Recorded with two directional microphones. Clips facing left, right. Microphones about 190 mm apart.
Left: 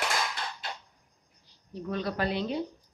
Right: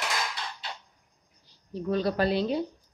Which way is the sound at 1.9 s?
35° right (ahead or behind).